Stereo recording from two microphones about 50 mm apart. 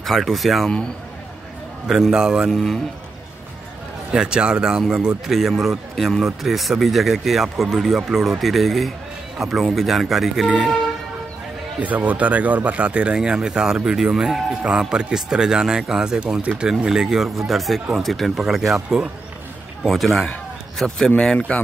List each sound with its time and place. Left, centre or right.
0.0 s a man's voice: centre
1.9 s speech: centre
2.5 s a man's voice: centre
4.1 s a man's voice: centre
11.8 s speech: right; by 17.3 s centre
17.5 s a man's voice: centre; by 21.6 s left